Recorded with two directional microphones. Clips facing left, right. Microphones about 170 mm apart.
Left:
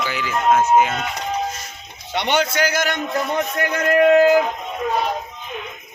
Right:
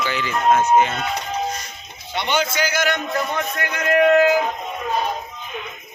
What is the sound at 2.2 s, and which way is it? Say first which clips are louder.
Speech: left 2 dB; 60° left (ahead or behind).